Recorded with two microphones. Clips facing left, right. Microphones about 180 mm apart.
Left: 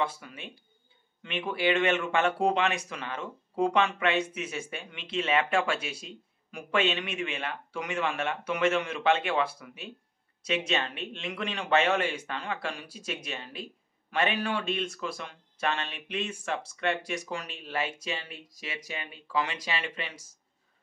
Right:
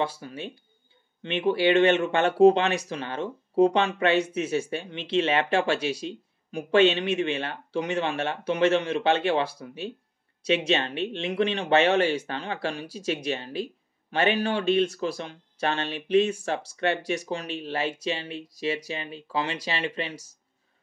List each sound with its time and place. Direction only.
0.0 s speech: 35° right (ahead or behind)